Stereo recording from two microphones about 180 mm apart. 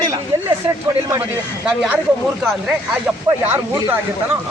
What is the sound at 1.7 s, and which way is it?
Speech, 10° right (ahead or behind).